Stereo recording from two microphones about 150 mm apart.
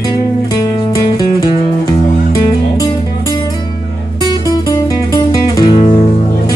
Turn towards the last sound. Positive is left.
turn(degrees=30)  # may be behind; listen again after turning